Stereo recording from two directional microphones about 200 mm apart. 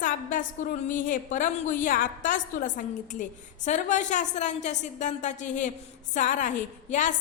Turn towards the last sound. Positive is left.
turn(degrees=40)  # may be behind; listen again after turning